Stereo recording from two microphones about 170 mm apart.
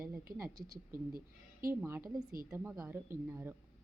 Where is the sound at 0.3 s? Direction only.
15° right (ahead or behind).